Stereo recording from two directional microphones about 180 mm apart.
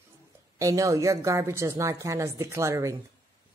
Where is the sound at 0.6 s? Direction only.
20° right (ahead or behind).